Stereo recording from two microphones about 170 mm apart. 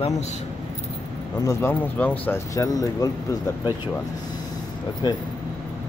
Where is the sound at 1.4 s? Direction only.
10° left (ahead or behind).